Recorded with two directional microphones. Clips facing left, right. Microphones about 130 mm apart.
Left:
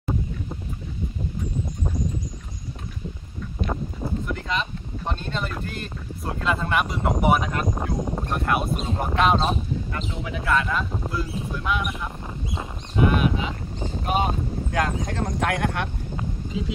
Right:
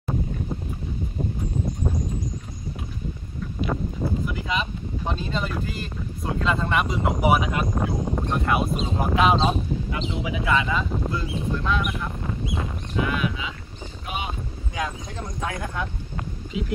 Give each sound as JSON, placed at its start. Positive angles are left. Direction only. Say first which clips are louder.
{"t": 4.3, "sound": "speech", "louder": "even", "side_deg": -5}
{"t": 12.9, "sound": "speech", "louder": "left 5 dB", "side_deg": 35}
{"t": 14.0, "sound": "boat", "louder": "left 7 dB", "side_deg": 45}
{"t": 14.8, "sound": "speech", "louder": "left 5 dB", "side_deg": 65}